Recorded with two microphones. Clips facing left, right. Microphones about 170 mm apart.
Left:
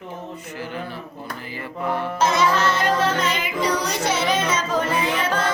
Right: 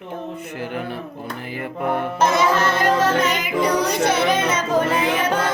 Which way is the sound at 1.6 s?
55° right (ahead or behind).